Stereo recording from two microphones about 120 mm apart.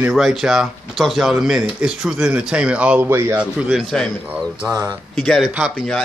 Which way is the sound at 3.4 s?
5° right (ahead or behind).